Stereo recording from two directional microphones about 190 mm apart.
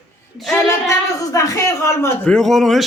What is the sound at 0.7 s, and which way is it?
A woman's voice, 15° left (ahead or behind).